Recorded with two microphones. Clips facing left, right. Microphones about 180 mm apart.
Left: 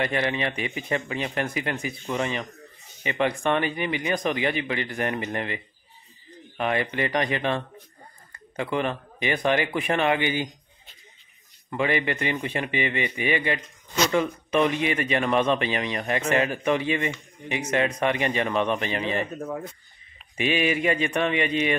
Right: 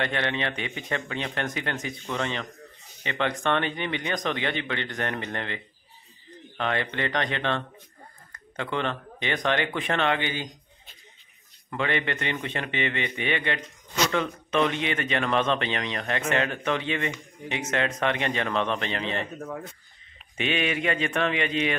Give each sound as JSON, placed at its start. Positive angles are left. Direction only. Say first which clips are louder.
{"t": 0.0, "sound": "speech", "louder": "left 2 dB", "side_deg": 5}
{"t": 11.7, "sound": "speech", "louder": "left 3 dB", "side_deg": 10}